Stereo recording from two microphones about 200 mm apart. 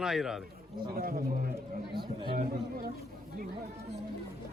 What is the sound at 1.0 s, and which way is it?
Speech, 50° right (ahead or behind).